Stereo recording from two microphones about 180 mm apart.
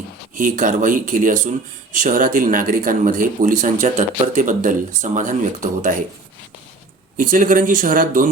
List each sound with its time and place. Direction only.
0.3 s speech: 45° right (ahead or behind)
7.2 s speech: 50° right (ahead or behind)